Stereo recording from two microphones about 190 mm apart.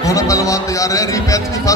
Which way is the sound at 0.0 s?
15° left (ahead or behind).